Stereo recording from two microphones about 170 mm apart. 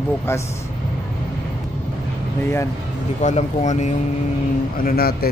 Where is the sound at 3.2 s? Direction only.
45° left (ahead or behind).